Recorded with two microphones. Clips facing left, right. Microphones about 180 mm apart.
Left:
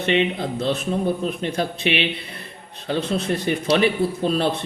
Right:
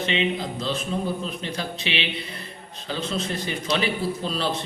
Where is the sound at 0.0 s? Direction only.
55° left (ahead or behind).